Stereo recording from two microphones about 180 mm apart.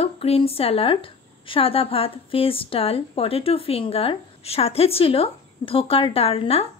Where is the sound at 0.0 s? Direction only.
35° left (ahead or behind).